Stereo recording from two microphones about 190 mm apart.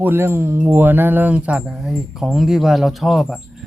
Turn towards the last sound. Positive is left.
turn(degrees=0)  # may be behind; listen again after turning